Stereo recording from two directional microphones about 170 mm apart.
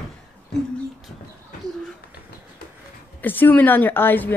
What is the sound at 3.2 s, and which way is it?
Speech, 10° left (ahead or behind).